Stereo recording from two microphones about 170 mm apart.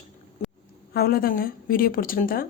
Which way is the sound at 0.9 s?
65° left (ahead or behind).